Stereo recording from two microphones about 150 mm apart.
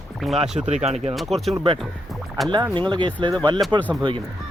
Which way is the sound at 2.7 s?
30° right (ahead or behind).